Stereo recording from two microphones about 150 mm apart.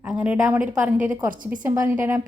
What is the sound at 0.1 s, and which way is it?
A woman's voice, 5° right (ahead or behind).